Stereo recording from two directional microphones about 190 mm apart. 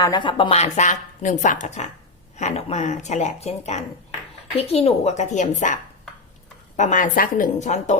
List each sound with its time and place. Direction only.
0.0 s speech: 20° left (ahead or behind); by 7.9 s 40° left (ahead or behind)